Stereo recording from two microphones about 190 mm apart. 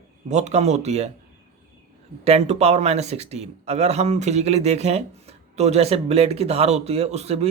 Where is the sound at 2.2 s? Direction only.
35° right (ahead or behind).